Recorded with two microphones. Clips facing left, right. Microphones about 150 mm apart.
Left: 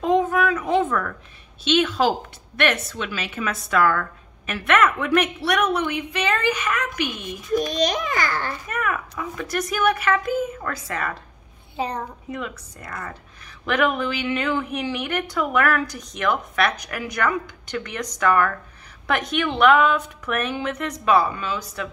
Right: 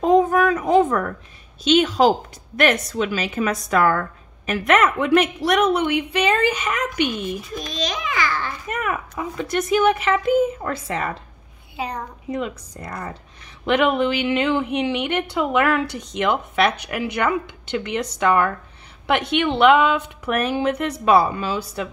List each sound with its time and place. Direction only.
0.0 s a sound: 40° right (ahead or behind)
1.7 s a woman's voice: 35° right (ahead or behind)
7.7 s a child's voice: 45° left (ahead or behind)
8.6 s a woman's voice: 30° right (ahead or behind)
12.3 s a woman's voice: 30° right (ahead or behind)